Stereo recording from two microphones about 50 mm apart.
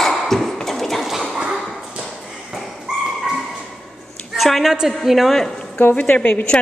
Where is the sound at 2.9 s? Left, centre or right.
Centre.